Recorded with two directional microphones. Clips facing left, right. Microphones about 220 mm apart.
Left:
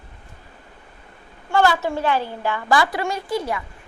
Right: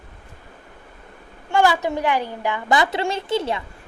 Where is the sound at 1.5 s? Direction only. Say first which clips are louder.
Even; 15° right (ahead or behind).